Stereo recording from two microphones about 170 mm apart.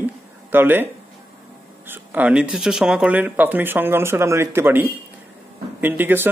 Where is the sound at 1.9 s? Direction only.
10° right (ahead or behind).